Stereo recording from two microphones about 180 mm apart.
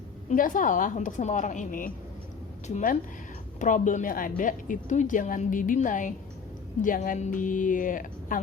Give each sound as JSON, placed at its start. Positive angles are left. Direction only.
{"t": 0.3, "sound": "a woman's voice", "side_deg": 50}